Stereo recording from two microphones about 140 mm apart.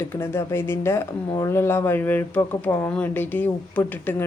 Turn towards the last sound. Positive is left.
turn(degrees=10)  # may be behind; listen again after turning